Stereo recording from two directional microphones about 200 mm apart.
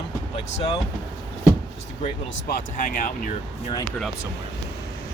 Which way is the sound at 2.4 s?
45° left (ahead or behind).